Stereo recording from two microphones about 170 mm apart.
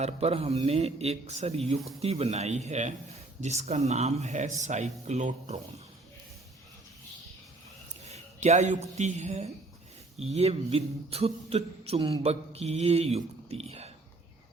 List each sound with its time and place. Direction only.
0.0 s speech: 35° right (ahead or behind)
8.0 s speech: 40° right (ahead or behind)